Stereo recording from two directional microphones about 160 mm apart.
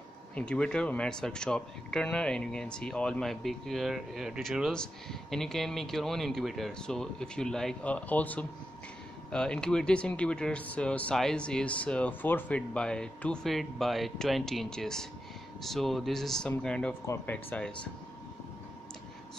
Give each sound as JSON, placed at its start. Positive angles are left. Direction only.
{"t": 0.4, "sound": "speech", "side_deg": 5}